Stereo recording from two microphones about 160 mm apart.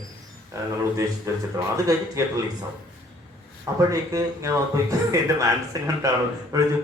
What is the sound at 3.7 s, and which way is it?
A man's voice, 20° right (ahead or behind).